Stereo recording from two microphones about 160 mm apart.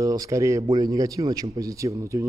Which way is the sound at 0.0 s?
20° right (ahead or behind).